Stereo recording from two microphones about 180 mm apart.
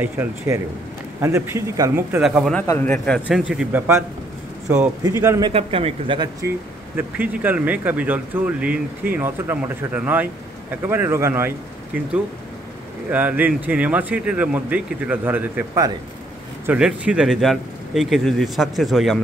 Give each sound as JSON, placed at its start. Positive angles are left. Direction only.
{"t": 0.0, "sound": "speech", "side_deg": -10}
{"t": 2.6, "sound": "a man's voice", "side_deg": 20}
{"t": 3.3, "sound": "speech", "side_deg": -5}
{"t": 5.0, "sound": "speech", "side_deg": -15}
{"t": 5.5, "sound": "speech", "side_deg": -30}
{"t": 7.0, "sound": "speech", "side_deg": -10}
{"t": 13.1, "sound": "speech", "side_deg": -10}